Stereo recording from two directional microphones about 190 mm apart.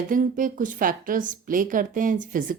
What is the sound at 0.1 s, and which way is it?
A woman's voice, 45° right (ahead or behind).